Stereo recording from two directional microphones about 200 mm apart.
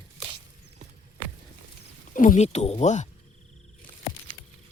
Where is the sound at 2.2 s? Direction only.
40° left (ahead or behind).